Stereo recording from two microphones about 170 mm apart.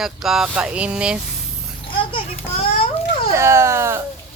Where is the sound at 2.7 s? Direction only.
35° left (ahead or behind).